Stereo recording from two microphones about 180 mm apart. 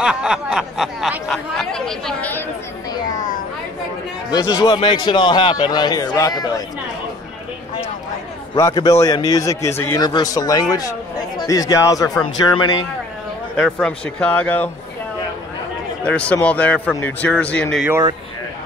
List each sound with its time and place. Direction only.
0.0 s speech: 5° right (ahead or behind)
4.3 s a man's voice: 20° left (ahead or behind)
8.5 s a man's voice: 20° left (ahead or behind)
13.6 s speech: 5° left (ahead or behind)
16.0 s speech: 5° left (ahead or behind)